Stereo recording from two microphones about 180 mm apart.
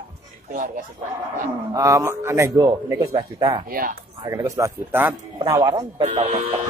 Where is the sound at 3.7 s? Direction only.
55° right (ahead or behind).